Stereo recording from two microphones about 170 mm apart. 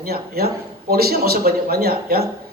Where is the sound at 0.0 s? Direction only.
65° right (ahead or behind).